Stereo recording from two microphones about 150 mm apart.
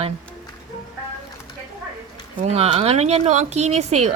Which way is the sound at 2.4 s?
45° right (ahead or behind).